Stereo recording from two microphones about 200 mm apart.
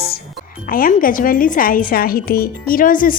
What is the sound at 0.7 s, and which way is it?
Speech, 45° left (ahead or behind).